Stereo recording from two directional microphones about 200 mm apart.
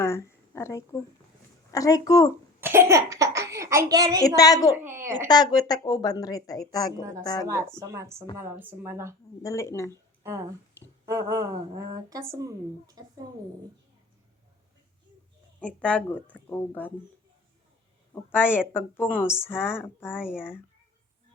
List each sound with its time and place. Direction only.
0.0 s a sound: 15° left (ahead or behind)
1.7 s speech: 15° left (ahead or behind)
2.6 s a woman's voice: 10° right (ahead or behind)
4.4 s speech: 15° left (ahead or behind)
4.7 s a woman's voice: 10° right (ahead or behind)
5.3 s a woman's voice: 20° left (ahead or behind)
7.0 s a woman's voice: 15° right (ahead or behind)
9.4 s speech: 15° left (ahead or behind)
9.9 s a sound: 15° right (ahead or behind)
11.0 s a woman's voice: 15° right (ahead or behind)
15.6 s speech: 5° left (ahead or behind)
18.1 s speech: 10° left (ahead or behind)
20.1 s speech: 5° right (ahead or behind)